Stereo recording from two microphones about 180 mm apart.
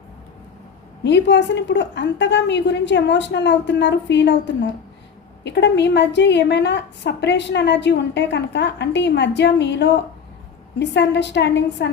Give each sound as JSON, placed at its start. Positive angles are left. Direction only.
{"t": 1.0, "sound": "a woman's voice", "side_deg": 75}